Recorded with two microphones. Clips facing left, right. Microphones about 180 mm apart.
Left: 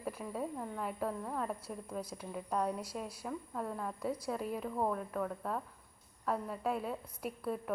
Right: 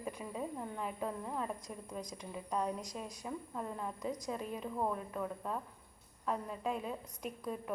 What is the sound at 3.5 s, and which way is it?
Speech, 15° right (ahead or behind).